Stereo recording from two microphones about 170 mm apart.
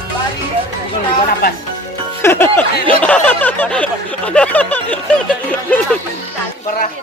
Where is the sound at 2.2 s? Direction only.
10° left (ahead or behind).